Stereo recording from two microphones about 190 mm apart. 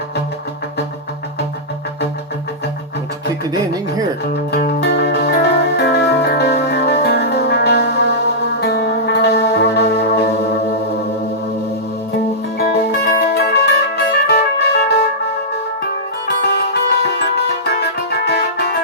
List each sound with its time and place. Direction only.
4.5 s music: 60° left (ahead or behind)
12.5 s music: 55° left (ahead or behind)
16.9 s music: 60° left (ahead or behind)